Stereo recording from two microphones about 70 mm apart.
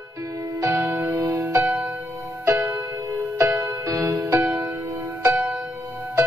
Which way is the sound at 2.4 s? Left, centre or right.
Right.